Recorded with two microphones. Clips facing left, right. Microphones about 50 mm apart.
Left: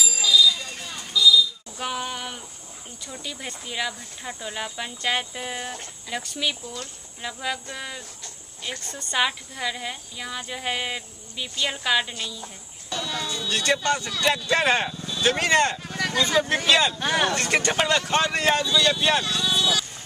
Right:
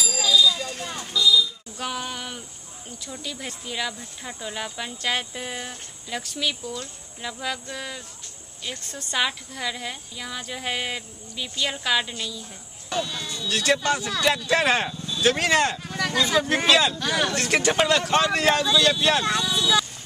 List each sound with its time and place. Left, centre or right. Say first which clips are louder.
0.0 s a sound: even; centre
1.1 s buzzer: left 2 dB; centre
1.8 s a sound: left 1 dB; centre
3.1 s a woman's voice: even; centre
13.1 s speech: left 3 dB; left
13.5 s a woman's voice: right 1 dB; centre
17.0 s speech: left 1 dB; centre
17.3 s a woman's voice: right 1 dB; centre